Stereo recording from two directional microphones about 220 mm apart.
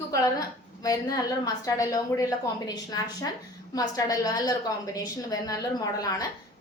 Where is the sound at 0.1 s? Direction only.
15° left (ahead or behind).